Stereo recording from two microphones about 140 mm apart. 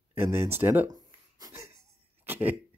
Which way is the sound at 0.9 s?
25° right (ahead or behind).